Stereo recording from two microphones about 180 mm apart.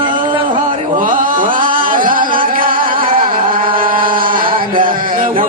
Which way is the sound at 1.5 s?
50° right (ahead or behind).